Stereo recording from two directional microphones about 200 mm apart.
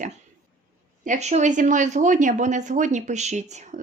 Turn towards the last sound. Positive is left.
turn(degrees=-35)  # may be behind; listen again after turning